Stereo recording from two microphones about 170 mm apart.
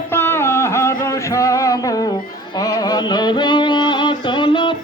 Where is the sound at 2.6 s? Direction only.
20° left (ahead or behind).